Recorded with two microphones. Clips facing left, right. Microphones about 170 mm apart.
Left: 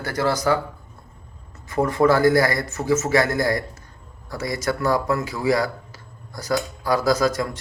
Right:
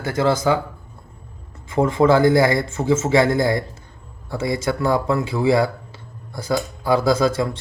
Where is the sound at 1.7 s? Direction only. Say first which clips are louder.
Right 3 dB; 25° right (ahead or behind).